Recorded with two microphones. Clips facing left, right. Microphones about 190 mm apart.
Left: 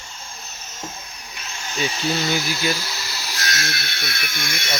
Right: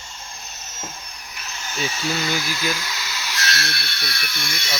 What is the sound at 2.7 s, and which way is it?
Speech, 35° left (ahead or behind).